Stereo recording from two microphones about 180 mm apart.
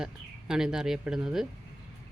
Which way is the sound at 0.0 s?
5° right (ahead or behind).